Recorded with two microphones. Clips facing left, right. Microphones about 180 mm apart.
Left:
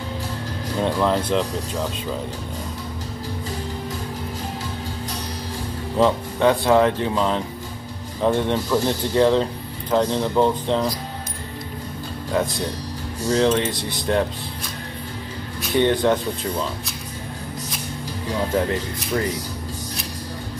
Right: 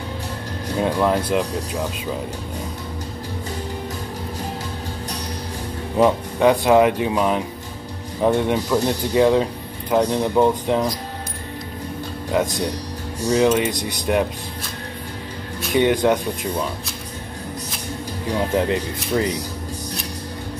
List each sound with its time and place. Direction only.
0.7 s speech: 10° right (ahead or behind)
5.9 s speech: 15° right (ahead or behind)
12.3 s speech: 20° right (ahead or behind)
15.7 s speech: 15° right (ahead or behind)
19.1 s speech: 20° right (ahead or behind)